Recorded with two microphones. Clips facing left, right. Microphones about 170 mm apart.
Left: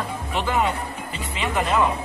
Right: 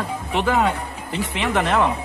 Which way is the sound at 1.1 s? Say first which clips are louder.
Right 7 dB; 80° right.